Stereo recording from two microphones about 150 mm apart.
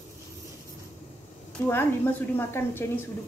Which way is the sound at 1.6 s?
20° left (ahead or behind).